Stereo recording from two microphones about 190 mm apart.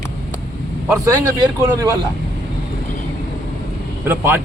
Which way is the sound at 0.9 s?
15° right (ahead or behind).